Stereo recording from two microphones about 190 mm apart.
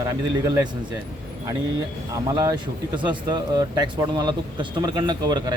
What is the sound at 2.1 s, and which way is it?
Speech, 20° right (ahead or behind).